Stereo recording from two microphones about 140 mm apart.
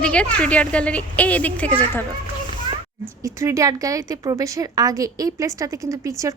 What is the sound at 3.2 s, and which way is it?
A woman's voice, 20° right (ahead or behind).